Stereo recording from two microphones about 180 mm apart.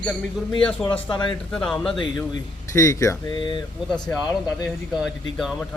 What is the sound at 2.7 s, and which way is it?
Speech, 15° left (ahead or behind).